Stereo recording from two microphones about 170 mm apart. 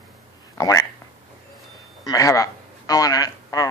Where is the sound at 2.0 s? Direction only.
20° left (ahead or behind).